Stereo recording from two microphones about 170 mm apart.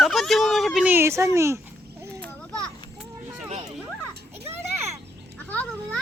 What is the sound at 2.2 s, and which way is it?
Children playing, 5° left (ahead or behind).